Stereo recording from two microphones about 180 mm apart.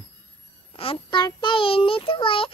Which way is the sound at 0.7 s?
30° left (ahead or behind).